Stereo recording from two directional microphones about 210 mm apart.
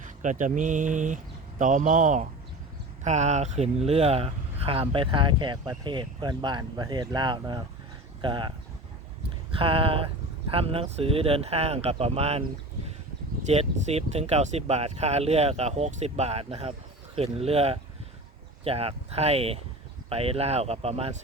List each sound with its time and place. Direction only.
0.0 s speech: 35° right (ahead or behind)
9.6 s speech: 25° right (ahead or behind)